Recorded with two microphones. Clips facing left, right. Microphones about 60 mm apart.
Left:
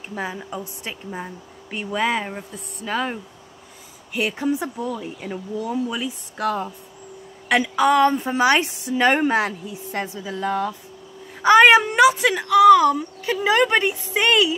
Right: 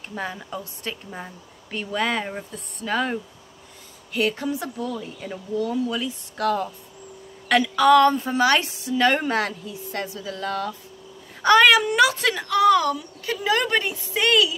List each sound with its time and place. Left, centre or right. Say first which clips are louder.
0.1 s a woman's voice: left 2 dB; centre; by 12.0 s left
12.0 s a woman's voice: left 4 dB; centre
12.9 s a woman's voice: left 5 dB; left